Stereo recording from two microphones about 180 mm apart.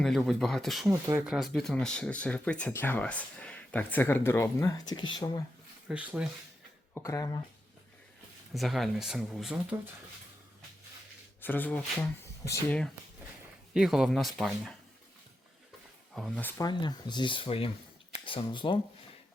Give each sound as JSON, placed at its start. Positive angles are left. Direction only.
{"t": 0.0, "sound": "speech", "side_deg": 0}
{"t": 0.9, "sound": "speech", "side_deg": -15}
{"t": 1.2, "sound": "speech", "side_deg": 0}
{"t": 5.9, "sound": "speech", "side_deg": -5}
{"t": 6.9, "sound": "speech", "side_deg": 20}
{"t": 8.5, "sound": "speech", "side_deg": 0}
{"t": 11.3, "sound": "speech", "side_deg": 10}
{"t": 13.7, "sound": "speech", "side_deg": 0}
{"t": 16.1, "sound": "speech", "side_deg": 5}
{"t": 16.6, "sound": "speech", "side_deg": 25}